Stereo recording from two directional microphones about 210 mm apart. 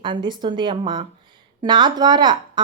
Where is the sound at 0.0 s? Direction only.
20° right (ahead or behind).